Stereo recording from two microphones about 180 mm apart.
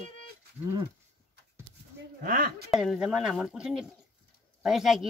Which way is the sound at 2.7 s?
Centre (ahead or behind).